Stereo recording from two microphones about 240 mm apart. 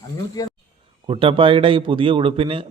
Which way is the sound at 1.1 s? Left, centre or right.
Right.